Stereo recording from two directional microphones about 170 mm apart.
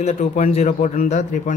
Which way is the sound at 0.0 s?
40° left (ahead or behind).